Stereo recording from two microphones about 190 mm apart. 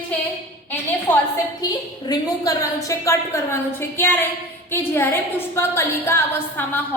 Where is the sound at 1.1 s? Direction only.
10° left (ahead or behind).